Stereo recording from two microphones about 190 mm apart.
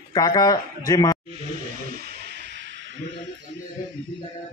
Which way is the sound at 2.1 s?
60° right (ahead or behind).